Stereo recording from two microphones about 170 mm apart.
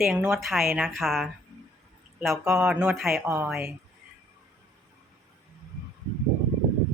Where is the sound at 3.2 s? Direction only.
15° right (ahead or behind).